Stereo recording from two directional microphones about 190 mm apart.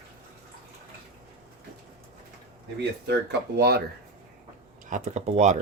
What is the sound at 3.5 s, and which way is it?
Speech, 55° right (ahead or behind).